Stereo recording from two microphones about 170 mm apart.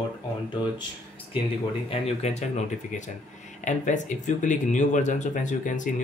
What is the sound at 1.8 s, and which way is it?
Speech, 35° left (ahead or behind).